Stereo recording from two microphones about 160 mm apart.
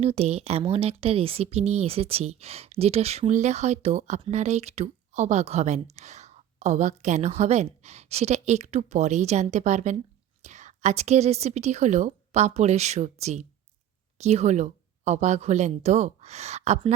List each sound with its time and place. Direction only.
0.0 s a woman's voice: 40° right (ahead or behind)